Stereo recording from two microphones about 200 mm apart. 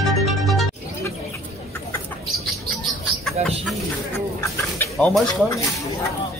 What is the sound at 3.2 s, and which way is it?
Speech, centre (ahead or behind).